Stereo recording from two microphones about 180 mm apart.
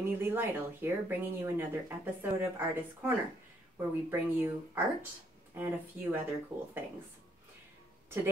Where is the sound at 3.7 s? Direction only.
10° right (ahead or behind).